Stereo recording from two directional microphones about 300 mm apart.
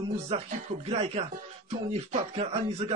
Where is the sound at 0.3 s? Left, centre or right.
Right.